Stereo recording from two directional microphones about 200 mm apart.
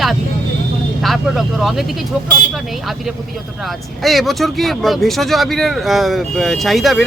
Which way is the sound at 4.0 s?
Centre (ahead or behind).